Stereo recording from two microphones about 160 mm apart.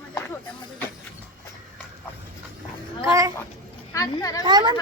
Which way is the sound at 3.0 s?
20° right (ahead or behind).